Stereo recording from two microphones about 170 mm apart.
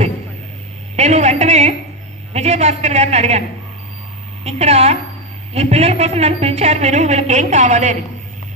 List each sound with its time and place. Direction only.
0.9 s a sound: 40° right (ahead or behind)
2.3 s a woman's voice: 40° right (ahead or behind)
4.5 s a woman's voice: 40° right (ahead or behind)